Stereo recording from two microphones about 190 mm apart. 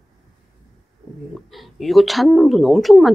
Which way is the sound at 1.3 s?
Centre (ahead or behind).